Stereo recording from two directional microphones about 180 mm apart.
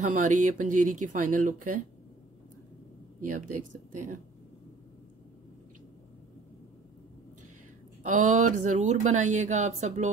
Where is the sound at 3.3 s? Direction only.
45° right (ahead or behind).